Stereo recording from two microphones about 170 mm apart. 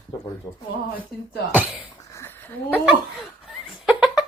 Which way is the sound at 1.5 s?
5° right (ahead or behind).